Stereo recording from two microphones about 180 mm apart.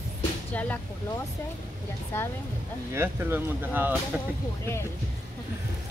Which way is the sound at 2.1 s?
15° left (ahead or behind).